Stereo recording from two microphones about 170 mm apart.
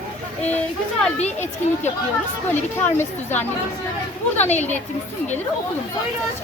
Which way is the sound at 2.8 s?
10° left (ahead or behind).